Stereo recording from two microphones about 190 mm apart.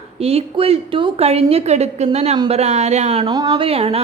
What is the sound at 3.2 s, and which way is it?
Speech, 20° right (ahead or behind).